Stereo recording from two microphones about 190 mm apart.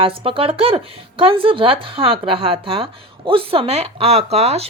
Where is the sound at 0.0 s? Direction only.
30° right (ahead or behind).